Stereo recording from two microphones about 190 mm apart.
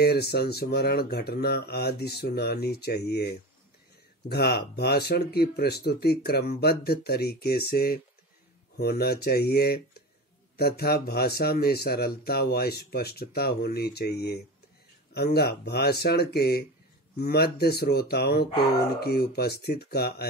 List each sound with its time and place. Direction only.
0.0 s speech: 55° left (ahead or behind)